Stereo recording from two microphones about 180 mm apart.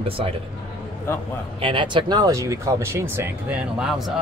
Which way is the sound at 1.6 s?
30° right (ahead or behind).